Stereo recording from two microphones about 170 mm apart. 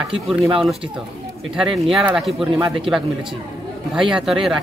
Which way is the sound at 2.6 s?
30° right (ahead or behind).